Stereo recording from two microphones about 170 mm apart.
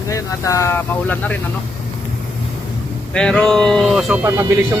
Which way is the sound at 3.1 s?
5° left (ahead or behind).